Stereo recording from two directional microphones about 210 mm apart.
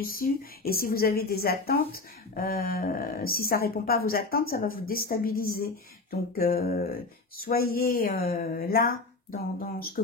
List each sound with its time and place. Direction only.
0.0 s a woman's voice: 45° left (ahead or behind)